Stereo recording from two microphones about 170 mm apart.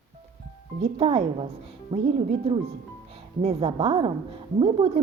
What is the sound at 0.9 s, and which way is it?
A woman's voice, 30° right (ahead or behind).